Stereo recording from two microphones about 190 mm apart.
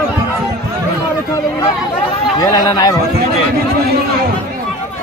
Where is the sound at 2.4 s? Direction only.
20° left (ahead or behind).